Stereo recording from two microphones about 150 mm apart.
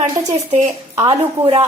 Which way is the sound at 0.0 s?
50° right (ahead or behind).